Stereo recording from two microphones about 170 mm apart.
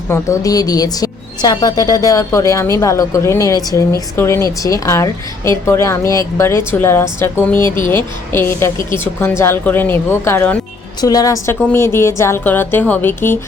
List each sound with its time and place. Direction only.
0.1 s a woman's voice: 20° left (ahead or behind)